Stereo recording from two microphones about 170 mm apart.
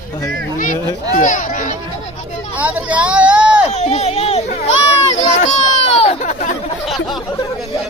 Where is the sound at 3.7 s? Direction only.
40° left (ahead or behind).